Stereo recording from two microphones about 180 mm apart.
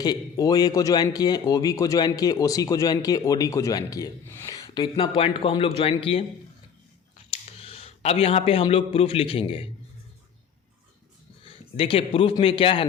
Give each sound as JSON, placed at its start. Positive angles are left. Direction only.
{"t": 0.0, "sound": "speech", "side_deg": 20}
{"t": 7.3, "sound": "speech", "side_deg": 30}
{"t": 11.8, "sound": "a man's voice", "side_deg": 30}